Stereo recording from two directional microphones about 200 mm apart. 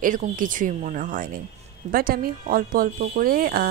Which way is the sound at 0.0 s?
40° right (ahead or behind).